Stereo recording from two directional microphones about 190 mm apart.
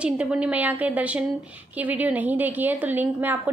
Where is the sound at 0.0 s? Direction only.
5° right (ahead or behind).